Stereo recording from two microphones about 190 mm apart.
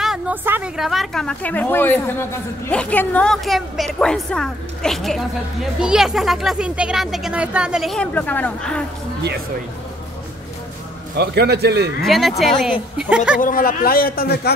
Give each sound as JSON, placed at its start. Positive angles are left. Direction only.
{"t": 0.0, "sound": "a woman's voice", "side_deg": -5}
{"t": 11.1, "sound": "a man's voice", "side_deg": -60}
{"t": 12.0, "sound": "a woman's voice", "side_deg": 0}
{"t": 13.4, "sound": "a man's voice", "side_deg": 45}